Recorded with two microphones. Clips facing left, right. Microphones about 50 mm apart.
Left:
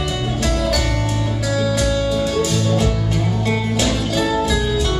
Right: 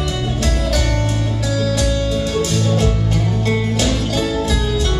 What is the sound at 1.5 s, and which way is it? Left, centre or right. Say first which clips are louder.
Music: left 1 dB; left.